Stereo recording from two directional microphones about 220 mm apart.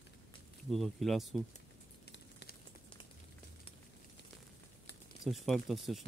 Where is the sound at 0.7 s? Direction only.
Centre (ahead or behind).